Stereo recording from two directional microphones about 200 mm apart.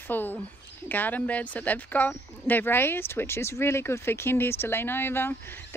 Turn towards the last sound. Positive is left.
turn(degrees=10)  # may be behind; listen again after turning